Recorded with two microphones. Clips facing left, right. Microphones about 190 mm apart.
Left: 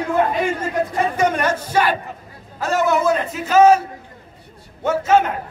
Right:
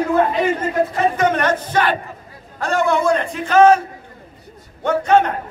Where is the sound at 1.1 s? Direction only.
10° left (ahead or behind).